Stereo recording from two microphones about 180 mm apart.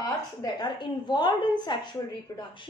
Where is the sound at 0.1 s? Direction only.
20° left (ahead or behind).